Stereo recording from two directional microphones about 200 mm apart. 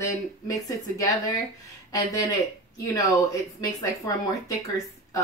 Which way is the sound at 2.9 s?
15° left (ahead or behind).